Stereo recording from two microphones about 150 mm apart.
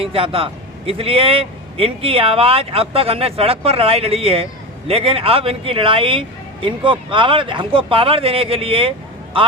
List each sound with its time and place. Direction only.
0.0 s a man's voice: 40° right (ahead or behind)